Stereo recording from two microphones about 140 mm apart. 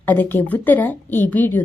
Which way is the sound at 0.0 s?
10° left (ahead or behind).